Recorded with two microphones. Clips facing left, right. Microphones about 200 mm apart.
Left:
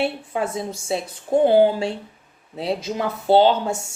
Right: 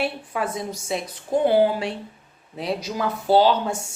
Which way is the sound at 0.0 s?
25° left (ahead or behind).